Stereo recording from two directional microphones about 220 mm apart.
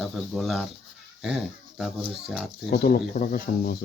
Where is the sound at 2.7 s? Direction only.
40° left (ahead or behind).